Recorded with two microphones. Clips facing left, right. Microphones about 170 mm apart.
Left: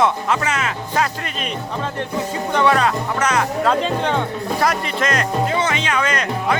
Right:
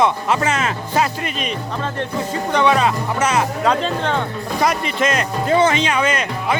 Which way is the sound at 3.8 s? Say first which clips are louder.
Left 1 dB; 15° left (ahead or behind).